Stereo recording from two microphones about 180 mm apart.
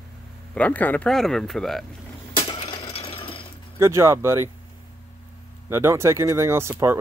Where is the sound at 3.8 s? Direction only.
15° right (ahead or behind).